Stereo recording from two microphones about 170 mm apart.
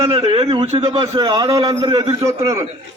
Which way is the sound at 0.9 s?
20° right (ahead or behind).